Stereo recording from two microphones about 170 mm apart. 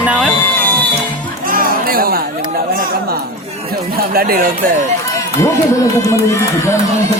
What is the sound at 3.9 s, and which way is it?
Speech, 65° right (ahead or behind).